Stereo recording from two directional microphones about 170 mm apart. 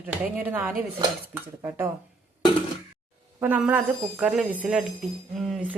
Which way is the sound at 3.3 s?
10° right (ahead or behind).